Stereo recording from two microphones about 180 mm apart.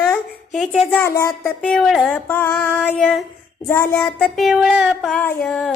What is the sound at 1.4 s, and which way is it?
Female singing, centre (ahead or behind).